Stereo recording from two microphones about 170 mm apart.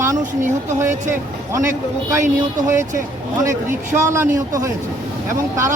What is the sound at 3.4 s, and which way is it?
A man's voice, 15° right (ahead or behind).